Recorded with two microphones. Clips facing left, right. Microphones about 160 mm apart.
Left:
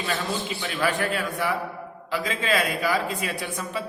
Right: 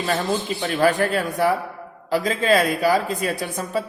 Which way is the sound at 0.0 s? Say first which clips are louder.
Right 5 dB; 40° right (ahead or behind).